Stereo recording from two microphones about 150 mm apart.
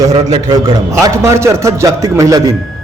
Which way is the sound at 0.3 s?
25° right (ahead or behind).